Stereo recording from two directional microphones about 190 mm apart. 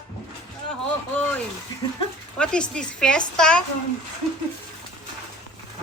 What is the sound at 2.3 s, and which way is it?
A woman's voice, 5° left (ahead or behind).